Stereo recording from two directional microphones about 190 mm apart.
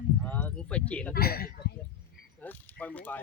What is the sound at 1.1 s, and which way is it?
Speech, 55° left (ahead or behind).